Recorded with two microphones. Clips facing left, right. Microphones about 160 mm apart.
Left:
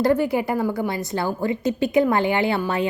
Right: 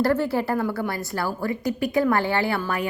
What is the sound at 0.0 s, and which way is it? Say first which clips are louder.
A woman's voice: left 2 dB; 15° left (ahead or behind).